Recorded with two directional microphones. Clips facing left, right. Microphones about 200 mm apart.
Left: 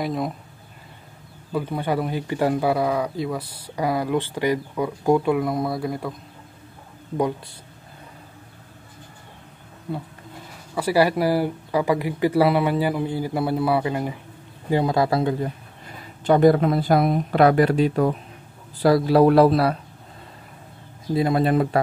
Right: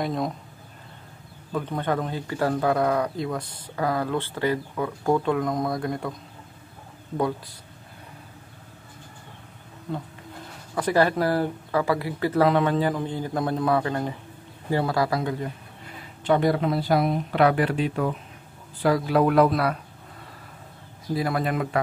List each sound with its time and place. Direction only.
0.0 s speech: centre (ahead or behind)
1.5 s speech: 10° left (ahead or behind)
9.9 s speech: 5° left (ahead or behind); by 15.3 s 30° left (ahead or behind)
16.3 s speech: 45° left (ahead or behind); by 19.8 s 30° left (ahead or behind)
21.1 s speech: 25° left (ahead or behind)